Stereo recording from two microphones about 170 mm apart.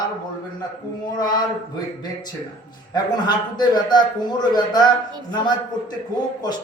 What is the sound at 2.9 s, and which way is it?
A man's voice, 25° left (ahead or behind).